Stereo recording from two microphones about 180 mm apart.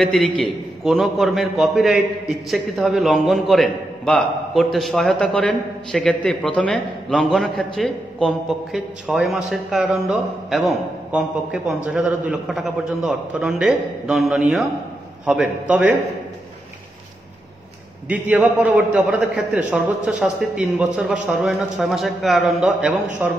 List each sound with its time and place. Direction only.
0.0 s a man's voice: 5° left (ahead or behind)
18.0 s a man's voice: 10° right (ahead or behind)